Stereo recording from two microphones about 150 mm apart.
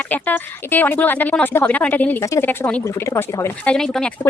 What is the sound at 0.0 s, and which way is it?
Speech, 10° left (ahead or behind).